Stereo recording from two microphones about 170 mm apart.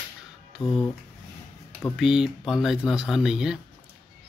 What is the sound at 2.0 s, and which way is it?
Speech, centre (ahead or behind).